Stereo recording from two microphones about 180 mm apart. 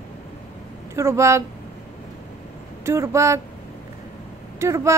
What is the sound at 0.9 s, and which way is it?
Speech, 15° right (ahead or behind).